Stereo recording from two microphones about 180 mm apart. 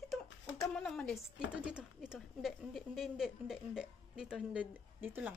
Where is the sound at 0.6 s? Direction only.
5° left (ahead or behind).